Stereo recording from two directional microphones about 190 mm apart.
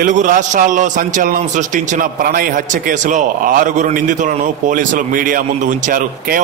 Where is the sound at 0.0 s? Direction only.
45° right (ahead or behind).